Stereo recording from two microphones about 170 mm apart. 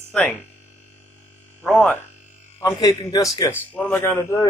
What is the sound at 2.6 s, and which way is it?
Speech, 20° left (ahead or behind).